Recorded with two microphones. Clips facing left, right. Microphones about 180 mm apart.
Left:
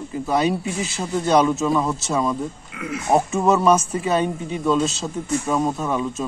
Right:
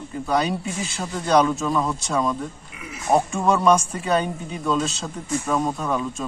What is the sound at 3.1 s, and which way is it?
Speech, 5° left (ahead or behind).